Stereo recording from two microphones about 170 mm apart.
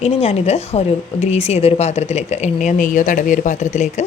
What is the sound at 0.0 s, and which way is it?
A woman's voice, 35° left (ahead or behind).